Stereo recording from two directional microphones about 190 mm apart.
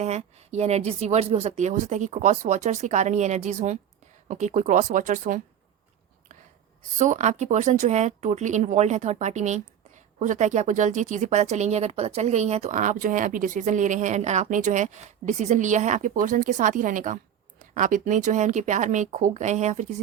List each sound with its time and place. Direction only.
0.0 s speech: 35° right (ahead or behind)
7.0 s speech: 40° right (ahead or behind)